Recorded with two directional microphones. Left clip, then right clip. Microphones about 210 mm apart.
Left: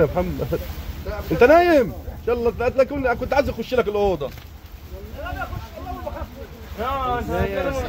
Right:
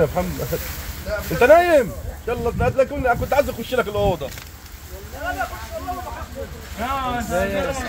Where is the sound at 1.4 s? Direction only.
20° left (ahead or behind).